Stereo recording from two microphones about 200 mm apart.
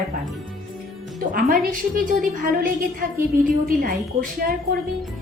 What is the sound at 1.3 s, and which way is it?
A woman's voice, 45° right (ahead or behind).